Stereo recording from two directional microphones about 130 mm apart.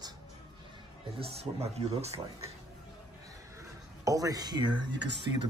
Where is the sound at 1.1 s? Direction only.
50° right (ahead or behind).